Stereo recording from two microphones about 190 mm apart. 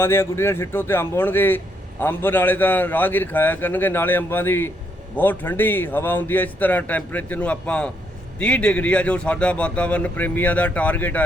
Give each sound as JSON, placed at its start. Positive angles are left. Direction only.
{"t": 0.0, "sound": "speech", "side_deg": 10}